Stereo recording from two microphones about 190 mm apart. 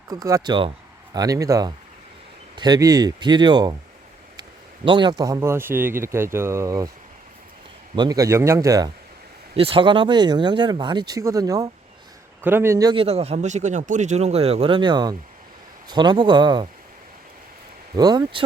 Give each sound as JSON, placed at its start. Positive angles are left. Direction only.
{"t": 0.1, "sound": "speech", "side_deg": -15}
{"t": 4.9, "sound": "speech", "side_deg": -25}
{"t": 7.9, "sound": "speech", "side_deg": -20}
{"t": 9.6, "sound": "a man's voice", "side_deg": -30}
{"t": 17.9, "sound": "speech", "side_deg": -20}